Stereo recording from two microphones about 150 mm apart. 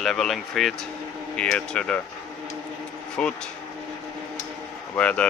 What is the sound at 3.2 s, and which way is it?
Speech, 5° left (ahead or behind).